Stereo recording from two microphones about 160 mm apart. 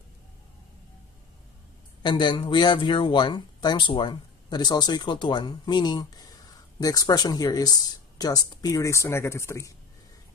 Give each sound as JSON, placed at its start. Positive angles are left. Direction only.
{"t": 2.0, "sound": "speech", "side_deg": 30}